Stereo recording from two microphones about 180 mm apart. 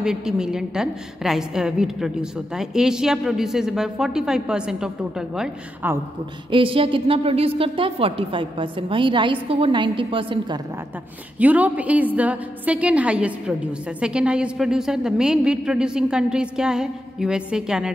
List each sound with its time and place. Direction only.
0.0 s a woman's voice: 5° right (ahead or behind)
6.5 s a woman's voice: 30° right (ahead or behind)
11.3 s a woman's voice: 10° right (ahead or behind)